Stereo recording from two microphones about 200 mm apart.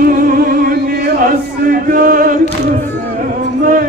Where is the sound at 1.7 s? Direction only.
45° right (ahead or behind).